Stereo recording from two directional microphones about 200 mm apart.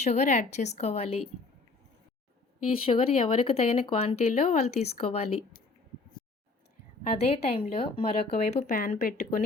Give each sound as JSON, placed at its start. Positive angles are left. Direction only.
{"t": 0.0, "sound": "speech", "side_deg": 35}
{"t": 2.8, "sound": "speech", "side_deg": 30}
{"t": 7.2, "sound": "speech", "side_deg": 30}